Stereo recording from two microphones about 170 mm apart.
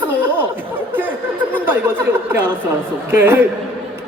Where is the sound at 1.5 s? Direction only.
10° right (ahead or behind).